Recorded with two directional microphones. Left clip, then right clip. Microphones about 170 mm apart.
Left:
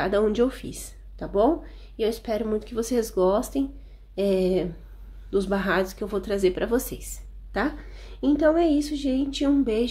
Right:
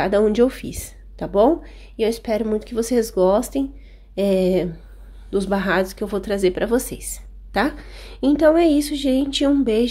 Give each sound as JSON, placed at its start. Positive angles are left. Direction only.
{"t": 0.0, "sound": "a woman's voice", "side_deg": -30}